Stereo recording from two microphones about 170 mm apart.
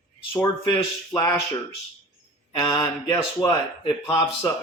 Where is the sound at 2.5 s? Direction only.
20° left (ahead or behind).